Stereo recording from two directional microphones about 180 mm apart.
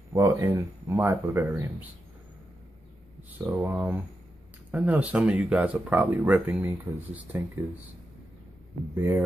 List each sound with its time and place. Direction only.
0.1 s speech: 20° right (ahead or behind)
3.4 s speech: 10° right (ahead or behind)
8.9 s speech: 10° right (ahead or behind)